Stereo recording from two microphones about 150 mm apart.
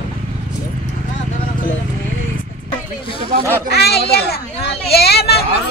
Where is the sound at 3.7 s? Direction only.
90° left.